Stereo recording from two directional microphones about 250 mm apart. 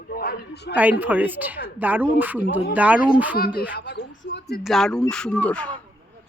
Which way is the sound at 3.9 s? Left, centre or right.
Left.